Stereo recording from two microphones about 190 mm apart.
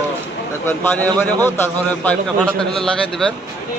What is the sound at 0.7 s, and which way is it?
A man's voice, 10° left (ahead or behind).